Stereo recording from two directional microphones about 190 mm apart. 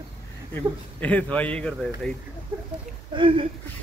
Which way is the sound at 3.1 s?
25° right (ahead or behind).